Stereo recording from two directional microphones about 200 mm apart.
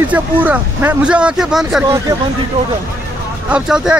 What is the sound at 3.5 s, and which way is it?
Speech, 5° right (ahead or behind).